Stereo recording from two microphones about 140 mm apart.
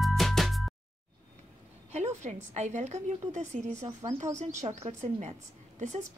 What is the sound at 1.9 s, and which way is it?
A woman's voice, 55° right (ahead or behind).